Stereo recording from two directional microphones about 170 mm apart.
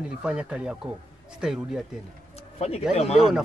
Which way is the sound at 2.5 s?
35° left (ahead or behind).